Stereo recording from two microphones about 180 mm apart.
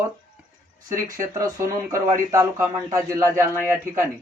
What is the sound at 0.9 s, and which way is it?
Speech, 20° right (ahead or behind).